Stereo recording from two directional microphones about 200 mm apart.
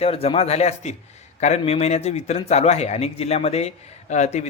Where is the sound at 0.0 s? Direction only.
30° left (ahead or behind).